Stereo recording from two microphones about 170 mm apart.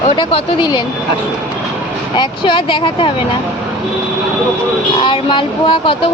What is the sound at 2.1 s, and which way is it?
Speech, 30° left (ahead or behind).